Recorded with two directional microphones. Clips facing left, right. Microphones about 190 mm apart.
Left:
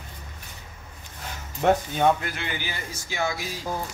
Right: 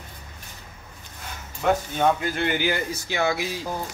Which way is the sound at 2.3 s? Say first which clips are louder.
Right 9 dB; 65° right (ahead or behind).